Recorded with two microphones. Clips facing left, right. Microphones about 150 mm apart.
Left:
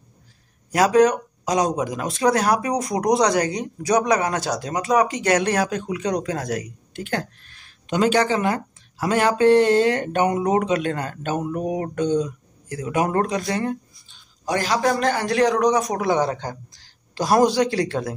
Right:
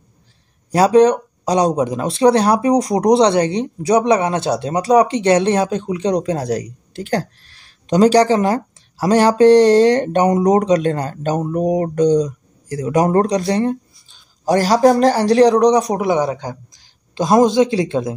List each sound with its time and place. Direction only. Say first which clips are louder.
0.7 s speech: right 5 dB; 30° right (ahead or behind)
16.0 s a man's voice: right 4 dB; 15° right (ahead or behind)